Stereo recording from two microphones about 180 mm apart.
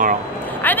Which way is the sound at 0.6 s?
10° left (ahead or behind).